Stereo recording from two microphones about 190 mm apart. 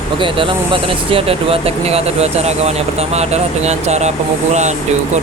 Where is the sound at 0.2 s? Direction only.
25° right (ahead or behind).